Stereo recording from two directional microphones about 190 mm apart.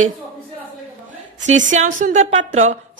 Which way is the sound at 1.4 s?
40° right (ahead or behind).